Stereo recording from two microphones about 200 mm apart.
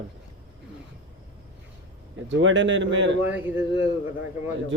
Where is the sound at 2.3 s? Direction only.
70° right (ahead or behind).